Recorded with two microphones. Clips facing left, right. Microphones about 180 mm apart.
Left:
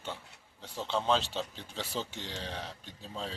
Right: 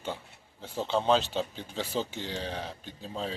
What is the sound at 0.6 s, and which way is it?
Speech, 45° right (ahead or behind).